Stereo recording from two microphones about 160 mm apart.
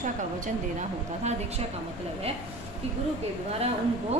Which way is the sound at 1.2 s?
45° right (ahead or behind).